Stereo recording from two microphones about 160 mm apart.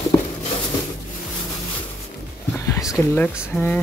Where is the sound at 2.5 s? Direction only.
20° left (ahead or behind).